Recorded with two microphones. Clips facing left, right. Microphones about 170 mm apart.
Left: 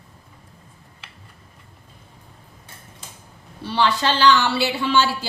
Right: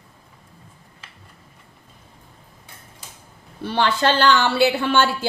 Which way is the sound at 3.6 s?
55° right (ahead or behind).